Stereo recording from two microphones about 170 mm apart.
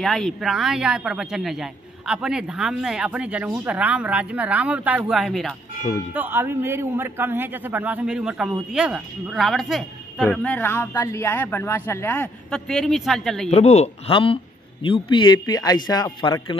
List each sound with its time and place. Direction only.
0.0 s a man's voice: centre (ahead or behind)
6.1 s a man's voice: 10° right (ahead or behind)
13.5 s speech: 40° left (ahead or behind)